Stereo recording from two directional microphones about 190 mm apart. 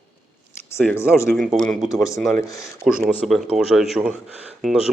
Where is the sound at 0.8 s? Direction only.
15° left (ahead or behind).